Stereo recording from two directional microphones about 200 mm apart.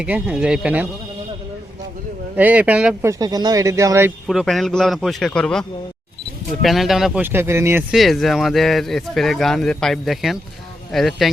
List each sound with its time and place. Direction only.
0.0 s speech: 5° right (ahead or behind)
2.3 s speech: 10° right (ahead or behind)
3.1 s speech: 20° right (ahead or behind)
4.3 s speech: centre (ahead or behind)
7.9 s speech: centre (ahead or behind)